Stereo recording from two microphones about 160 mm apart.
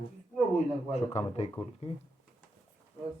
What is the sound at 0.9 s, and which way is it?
Speech, 40° left (ahead or behind).